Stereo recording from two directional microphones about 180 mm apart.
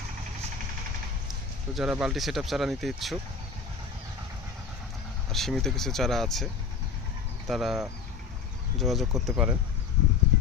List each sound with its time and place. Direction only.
1.7 s speech: 5° right (ahead or behind)
5.3 s speech: centre (ahead or behind)